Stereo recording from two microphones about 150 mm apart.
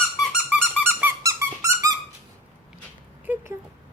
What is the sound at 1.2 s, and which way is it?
Squeak, 20° right (ahead or behind).